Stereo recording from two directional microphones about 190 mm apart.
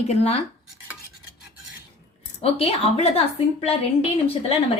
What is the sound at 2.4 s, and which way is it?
Speech, 30° left (ahead or behind).